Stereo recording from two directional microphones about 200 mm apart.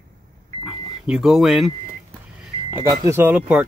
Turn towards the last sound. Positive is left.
turn(degrees=-5)  # may be behind; listen again after turning